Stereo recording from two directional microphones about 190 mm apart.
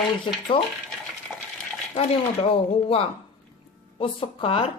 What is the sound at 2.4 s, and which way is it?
Speech, 30° left (ahead or behind).